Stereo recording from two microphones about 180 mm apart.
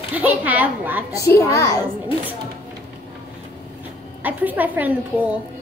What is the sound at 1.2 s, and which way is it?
Speech, 15° left (ahead or behind).